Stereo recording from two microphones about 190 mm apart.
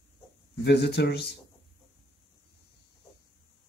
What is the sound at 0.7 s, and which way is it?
Speech, 60° left (ahead or behind).